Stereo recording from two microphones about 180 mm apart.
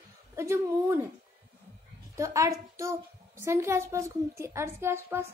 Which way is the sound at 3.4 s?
15° right (ahead or behind).